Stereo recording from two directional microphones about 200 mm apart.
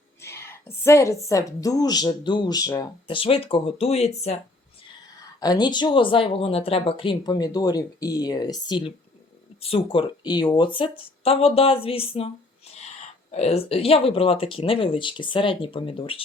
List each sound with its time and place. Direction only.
0.2 s a woman's voice: 15° left (ahead or behind); by 4.1 s 30° left (ahead or behind)
5.4 s a woman's voice: 20° left (ahead or behind)